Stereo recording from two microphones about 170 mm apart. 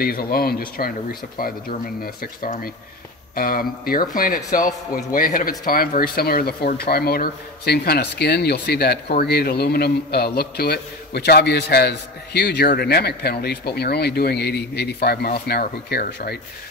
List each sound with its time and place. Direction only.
0.0 s speech: 60° left (ahead or behind)
2.4 s speech: 55° left (ahead or behind)